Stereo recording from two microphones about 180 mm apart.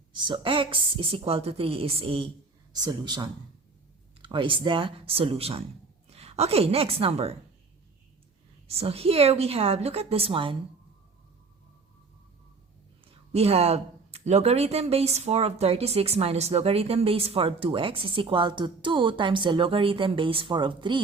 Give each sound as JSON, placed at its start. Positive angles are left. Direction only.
{"t": 0.3, "sound": "a woman's voice", "side_deg": -30}
{"t": 8.6, "sound": "speech", "side_deg": -35}
{"t": 13.3, "sound": "speech", "side_deg": -35}